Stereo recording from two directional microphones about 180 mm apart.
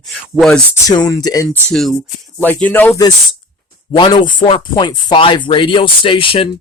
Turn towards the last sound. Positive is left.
turn(degrees=30)  # may be behind; listen again after turning